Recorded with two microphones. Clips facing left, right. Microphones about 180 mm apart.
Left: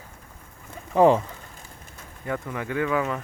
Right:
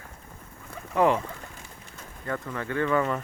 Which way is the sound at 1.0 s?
30° left (ahead or behind).